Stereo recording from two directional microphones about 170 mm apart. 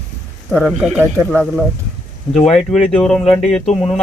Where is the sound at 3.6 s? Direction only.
40° left (ahead or behind).